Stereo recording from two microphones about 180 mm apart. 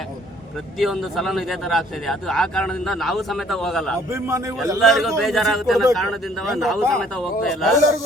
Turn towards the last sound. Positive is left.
turn(degrees=0)  # may be behind; listen again after turning